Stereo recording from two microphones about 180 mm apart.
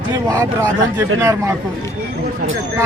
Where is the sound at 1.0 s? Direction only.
15° right (ahead or behind).